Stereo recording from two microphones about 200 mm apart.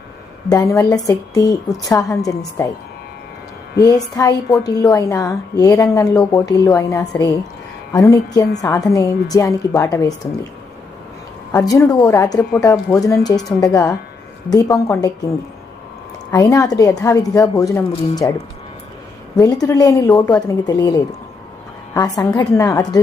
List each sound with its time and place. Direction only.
0.5 s a woman's voice: 15° left (ahead or behind)
3.8 s a woman's voice: 20° left (ahead or behind)
11.5 s a woman's voice: 15° left (ahead or behind)
19.4 s a woman's voice: 15° left (ahead or behind)